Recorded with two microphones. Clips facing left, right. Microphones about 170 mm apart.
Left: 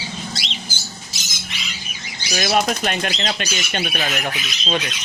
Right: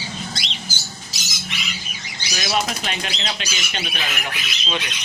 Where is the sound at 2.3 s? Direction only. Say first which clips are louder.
Left 4 dB; 55° left (ahead or behind).